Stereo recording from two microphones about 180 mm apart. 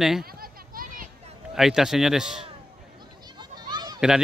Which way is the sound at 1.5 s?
5° right (ahead or behind).